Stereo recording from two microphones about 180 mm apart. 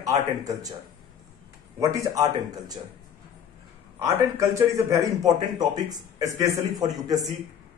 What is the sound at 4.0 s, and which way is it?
A man's voice, 15° right (ahead or behind).